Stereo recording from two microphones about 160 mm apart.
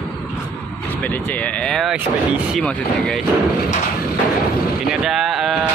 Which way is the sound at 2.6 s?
5° left (ahead or behind).